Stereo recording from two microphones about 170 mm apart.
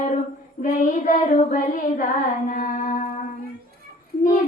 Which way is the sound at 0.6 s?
50° left (ahead or behind).